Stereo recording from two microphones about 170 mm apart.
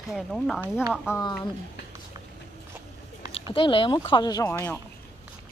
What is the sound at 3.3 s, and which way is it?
Speech, 30° left (ahead or behind).